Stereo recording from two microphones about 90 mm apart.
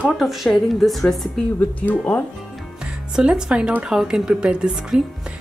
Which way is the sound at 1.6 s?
15° left (ahead or behind).